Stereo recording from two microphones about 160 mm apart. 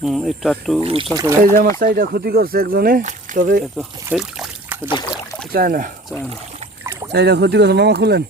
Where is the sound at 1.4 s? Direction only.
65° right (ahead or behind).